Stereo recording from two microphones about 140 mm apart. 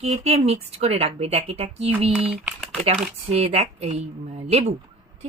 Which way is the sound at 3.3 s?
50° right (ahead or behind).